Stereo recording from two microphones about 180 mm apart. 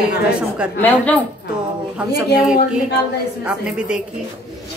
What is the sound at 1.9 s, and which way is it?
A man's voice, 5° right (ahead or behind).